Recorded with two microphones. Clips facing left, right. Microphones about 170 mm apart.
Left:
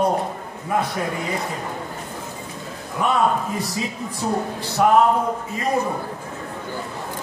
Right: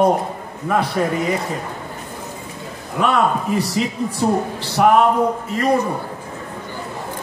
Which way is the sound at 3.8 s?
75° right (ahead or behind).